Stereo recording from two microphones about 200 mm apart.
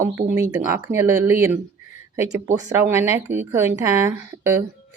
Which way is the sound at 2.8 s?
10° right (ahead or behind).